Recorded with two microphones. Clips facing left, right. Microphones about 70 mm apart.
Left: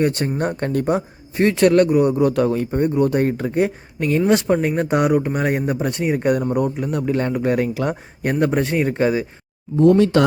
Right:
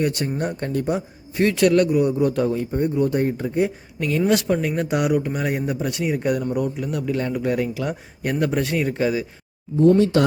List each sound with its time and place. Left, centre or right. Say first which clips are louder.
0.0 s speech: left 3 dB; left
1.4 s speech: left 3 dB; left
2.1 s speech: left 3 dB; left
4.3 s speech: left 3 dB; left
8.2 s speech: left 3 dB; left
10.0 s speech: left 2 dB; left